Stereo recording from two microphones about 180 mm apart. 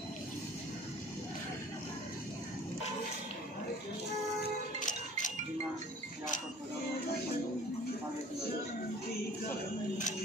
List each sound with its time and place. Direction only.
4.7 s music: 45° left (ahead or behind)